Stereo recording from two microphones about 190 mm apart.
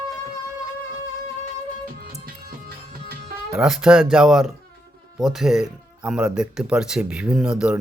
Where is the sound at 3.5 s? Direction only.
5° right (ahead or behind).